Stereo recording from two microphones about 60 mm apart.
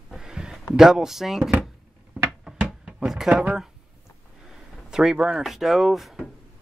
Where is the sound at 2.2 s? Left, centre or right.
Centre.